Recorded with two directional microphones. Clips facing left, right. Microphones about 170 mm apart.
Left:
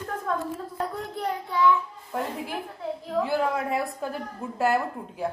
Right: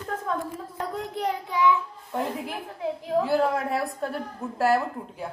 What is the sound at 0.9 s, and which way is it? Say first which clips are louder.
Speech: right 2 dB; 20° right (ahead or behind).